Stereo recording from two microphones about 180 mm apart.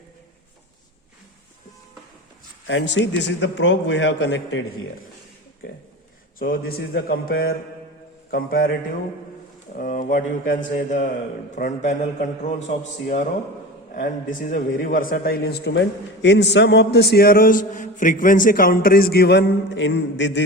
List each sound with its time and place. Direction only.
2.6 s a man's voice: 85° left
6.4 s a man's voice: 55° left (ahead or behind)
9.7 s a man's voice: 50° left (ahead or behind); by 20.4 s 85° left